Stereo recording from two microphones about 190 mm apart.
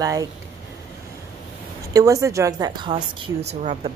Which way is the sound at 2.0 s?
15° right (ahead or behind).